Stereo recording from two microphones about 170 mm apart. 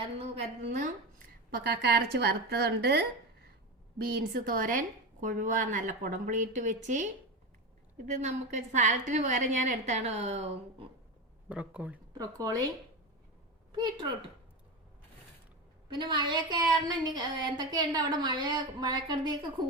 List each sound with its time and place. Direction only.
0.2 s a woman's voice: 40° right (ahead or behind)
1.5 s a woman's voice: 70° right (ahead or behind)
4.0 s a woman's voice: 55° right (ahead or behind); by 10.8 s 40° right (ahead or behind)
11.4 s speech: 10° right (ahead or behind)
12.1 s a woman's voice: 20° right (ahead or behind)
13.7 s a woman's voice: 25° right (ahead or behind)
15.9 s a woman's voice: 25° right (ahead or behind)